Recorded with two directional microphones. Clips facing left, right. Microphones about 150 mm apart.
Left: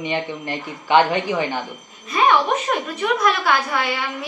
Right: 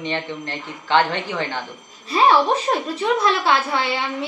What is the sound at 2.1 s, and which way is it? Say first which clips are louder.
A woman's voice: right 1 dB; 30° right (ahead or behind).